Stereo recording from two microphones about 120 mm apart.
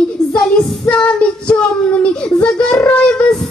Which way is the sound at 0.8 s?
10° left (ahead or behind).